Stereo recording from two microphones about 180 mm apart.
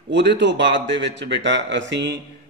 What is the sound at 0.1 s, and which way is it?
Speech, 75° right (ahead or behind).